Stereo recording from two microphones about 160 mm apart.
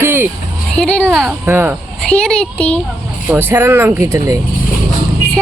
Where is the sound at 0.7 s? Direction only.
5° left (ahead or behind).